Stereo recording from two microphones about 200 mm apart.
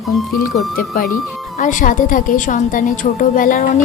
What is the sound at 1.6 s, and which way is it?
A woman's voice, 40° left (ahead or behind).